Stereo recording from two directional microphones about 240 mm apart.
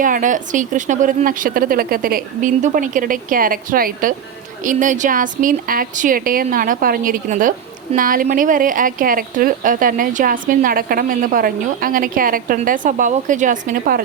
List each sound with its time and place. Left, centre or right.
0.0 s speech: right